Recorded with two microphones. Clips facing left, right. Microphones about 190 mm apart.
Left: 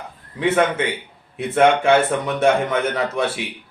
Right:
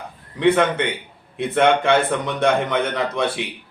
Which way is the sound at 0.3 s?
5° left (ahead or behind).